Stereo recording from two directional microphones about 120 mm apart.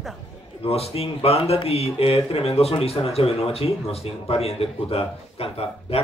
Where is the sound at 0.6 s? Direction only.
55° left (ahead or behind).